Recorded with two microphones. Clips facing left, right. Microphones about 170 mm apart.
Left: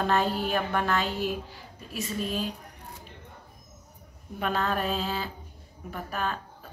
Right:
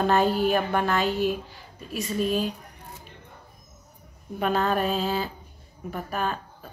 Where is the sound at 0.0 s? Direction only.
5° right (ahead or behind).